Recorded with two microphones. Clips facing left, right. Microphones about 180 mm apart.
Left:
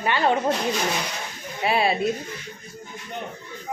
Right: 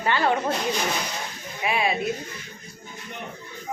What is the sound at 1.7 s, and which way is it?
Speech, 35° left (ahead or behind).